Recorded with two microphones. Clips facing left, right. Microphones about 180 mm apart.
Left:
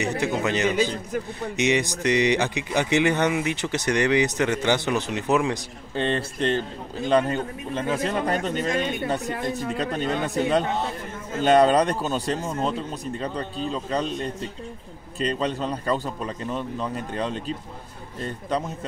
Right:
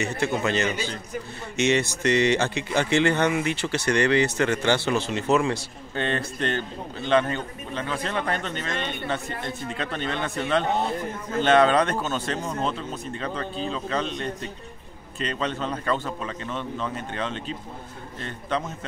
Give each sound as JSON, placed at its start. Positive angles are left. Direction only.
{"t": 0.0, "sound": "speech", "side_deg": 15}
{"t": 6.1, "sound": "speech", "side_deg": 30}
{"t": 11.4, "sound": "speech", "side_deg": 40}
{"t": 15.1, "sound": "speech", "side_deg": 35}